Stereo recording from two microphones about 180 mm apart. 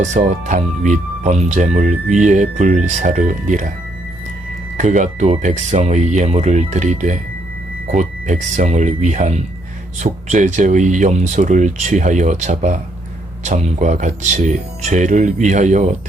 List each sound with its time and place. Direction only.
0.0 s speech: 40° right (ahead or behind)
4.8 s speech: 45° right (ahead or behind)